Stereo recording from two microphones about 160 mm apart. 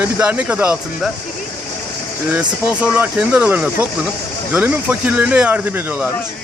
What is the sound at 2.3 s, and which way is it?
Speech, 5° right (ahead or behind).